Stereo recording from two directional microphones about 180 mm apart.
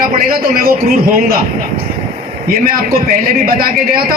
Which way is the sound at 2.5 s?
50° right (ahead or behind).